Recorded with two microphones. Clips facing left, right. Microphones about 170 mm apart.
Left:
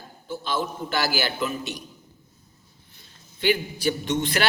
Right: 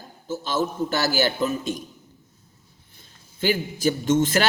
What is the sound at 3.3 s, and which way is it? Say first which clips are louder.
A man's voice: even; 45° right (ahead or behind).